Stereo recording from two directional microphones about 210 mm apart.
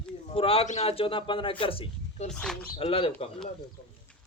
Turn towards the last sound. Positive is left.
turn(degrees=25)  # may be behind; listen again after turning